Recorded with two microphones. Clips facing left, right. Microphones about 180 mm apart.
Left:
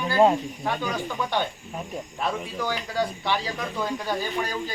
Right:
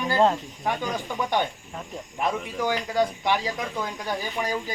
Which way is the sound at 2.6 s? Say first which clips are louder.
Right 4 dB; 15° right (ahead or behind).